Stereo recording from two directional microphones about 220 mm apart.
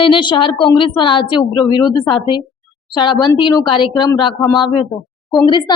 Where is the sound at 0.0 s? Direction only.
20° left (ahead or behind).